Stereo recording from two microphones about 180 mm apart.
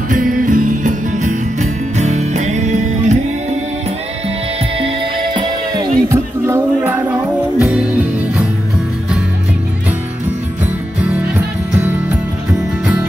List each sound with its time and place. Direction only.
0.1 s music: 50° right (ahead or behind)
4.7 s music: 30° right (ahead or behind); by 8.5 s 5° right (ahead or behind)
10.6 s music: 10° right (ahead or behind)